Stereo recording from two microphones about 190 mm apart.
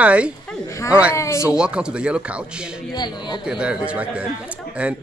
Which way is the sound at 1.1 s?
15° left (ahead or behind).